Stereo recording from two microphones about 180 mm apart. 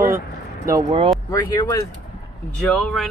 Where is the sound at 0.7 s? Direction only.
20° right (ahead or behind).